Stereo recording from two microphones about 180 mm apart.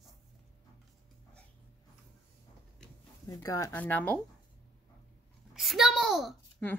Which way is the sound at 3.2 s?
15° left (ahead or behind).